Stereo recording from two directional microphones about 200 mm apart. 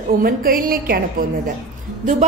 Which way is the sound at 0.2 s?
45° right (ahead or behind).